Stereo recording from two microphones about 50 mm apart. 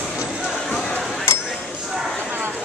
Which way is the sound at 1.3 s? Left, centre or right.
Left.